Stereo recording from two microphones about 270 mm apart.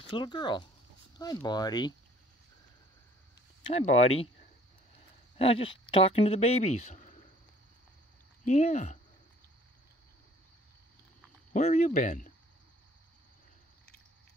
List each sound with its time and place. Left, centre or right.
0.1 s speech: centre
3.6 s speech: left
5.4 s speech: centre
8.5 s speech: left
11.5 s speech: left